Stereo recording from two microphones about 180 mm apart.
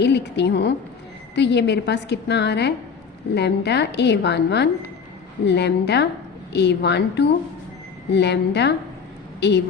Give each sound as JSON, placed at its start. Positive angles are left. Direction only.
{"t": 0.0, "sound": "a woman's voice", "side_deg": 70}